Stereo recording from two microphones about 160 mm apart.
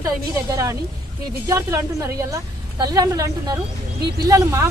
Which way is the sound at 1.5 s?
20° right (ahead or behind).